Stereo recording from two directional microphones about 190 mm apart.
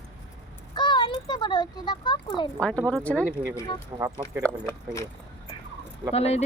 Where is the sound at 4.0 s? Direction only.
15° right (ahead or behind).